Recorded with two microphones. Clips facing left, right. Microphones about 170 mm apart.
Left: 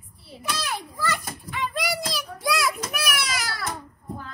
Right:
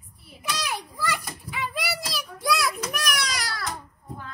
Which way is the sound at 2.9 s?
5° left (ahead or behind).